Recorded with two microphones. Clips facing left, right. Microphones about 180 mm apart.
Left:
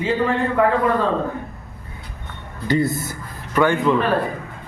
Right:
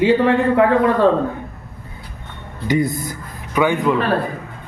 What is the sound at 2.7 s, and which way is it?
Speech, 15° right (ahead or behind).